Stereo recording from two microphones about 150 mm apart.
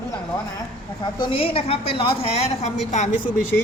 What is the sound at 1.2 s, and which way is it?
A woman's voice, 35° left (ahead or behind).